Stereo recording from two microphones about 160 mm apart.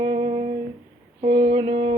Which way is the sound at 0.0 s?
45° right (ahead or behind).